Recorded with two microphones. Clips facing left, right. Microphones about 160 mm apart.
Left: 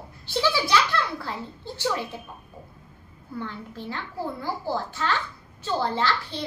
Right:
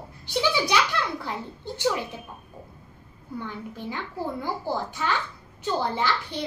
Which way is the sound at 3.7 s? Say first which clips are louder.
Even; 15° right (ahead or behind).